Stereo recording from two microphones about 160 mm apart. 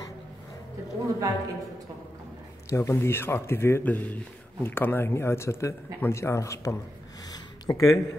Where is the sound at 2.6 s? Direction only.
15° left (ahead or behind).